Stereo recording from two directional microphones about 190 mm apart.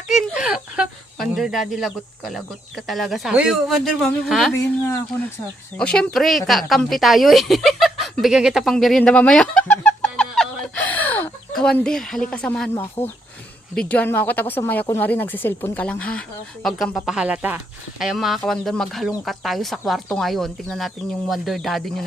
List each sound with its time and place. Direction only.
0.1 s speech: 5° right (ahead or behind)
5.7 s speech: 5° left (ahead or behind)
8.2 s a sound: 5° right (ahead or behind)
12.7 s speech: 15° left (ahead or behind)